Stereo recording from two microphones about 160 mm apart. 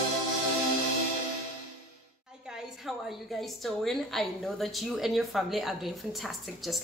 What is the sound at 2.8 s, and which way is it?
A woman's voice, centre (ahead or behind).